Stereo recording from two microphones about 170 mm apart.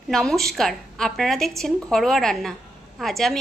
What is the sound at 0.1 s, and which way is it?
A woman's voice, centre (ahead or behind).